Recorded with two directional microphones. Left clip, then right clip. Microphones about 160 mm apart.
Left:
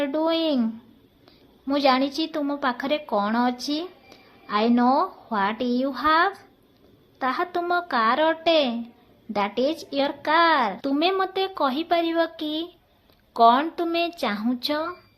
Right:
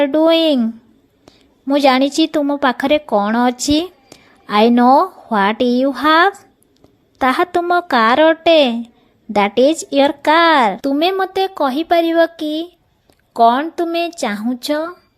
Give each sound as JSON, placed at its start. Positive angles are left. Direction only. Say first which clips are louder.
{"t": 0.0, "sound": "a woman's voice", "louder": "right 11 dB", "side_deg": -55}